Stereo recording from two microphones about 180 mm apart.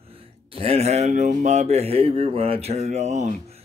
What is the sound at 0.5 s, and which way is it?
Speech, 35° right (ahead or behind).